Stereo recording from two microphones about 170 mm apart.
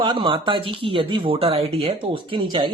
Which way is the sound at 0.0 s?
30° right (ahead or behind).